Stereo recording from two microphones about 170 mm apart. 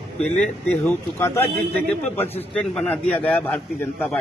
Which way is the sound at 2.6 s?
5° left (ahead or behind).